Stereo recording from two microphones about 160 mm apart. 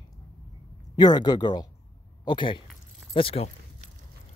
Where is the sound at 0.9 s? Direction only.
25° left (ahead or behind).